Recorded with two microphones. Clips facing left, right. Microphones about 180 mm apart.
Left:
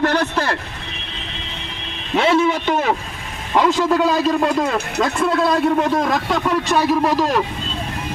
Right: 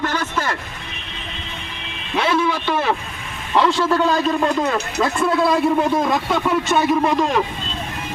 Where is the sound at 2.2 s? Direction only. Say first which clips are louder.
Left 3 dB; 25° left (ahead or behind).